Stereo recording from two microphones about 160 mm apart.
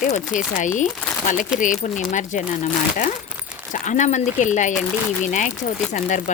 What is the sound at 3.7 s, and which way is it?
Speech, 50° left (ahead or behind).